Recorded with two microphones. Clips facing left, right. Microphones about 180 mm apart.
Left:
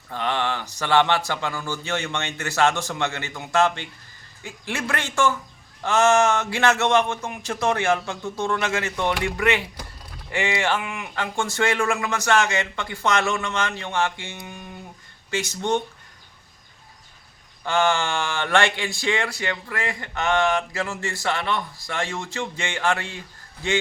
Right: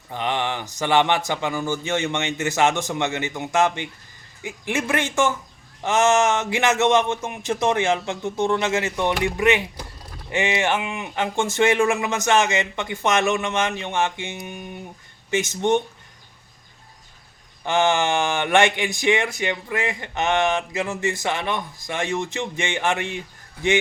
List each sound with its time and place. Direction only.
0.1 s speech: 15° right (ahead or behind)
17.6 s speech: 20° right (ahead or behind)